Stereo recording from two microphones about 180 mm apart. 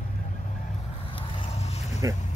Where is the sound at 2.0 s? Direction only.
20° right (ahead or behind).